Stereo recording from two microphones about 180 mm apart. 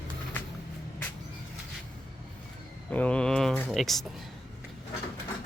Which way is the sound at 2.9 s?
5° left (ahead or behind).